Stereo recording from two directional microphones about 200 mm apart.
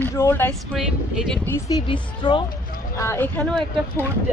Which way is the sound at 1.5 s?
20° left (ahead or behind).